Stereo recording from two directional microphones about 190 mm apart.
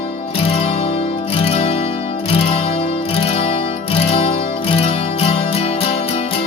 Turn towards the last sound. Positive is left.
turn(degrees=30)  # may be behind; listen again after turning